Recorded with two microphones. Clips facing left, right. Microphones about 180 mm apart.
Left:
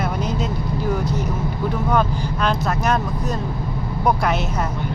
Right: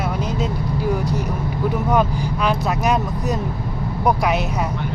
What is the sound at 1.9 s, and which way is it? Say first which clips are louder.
Speech: right 1 dB; 10° right (ahead or behind).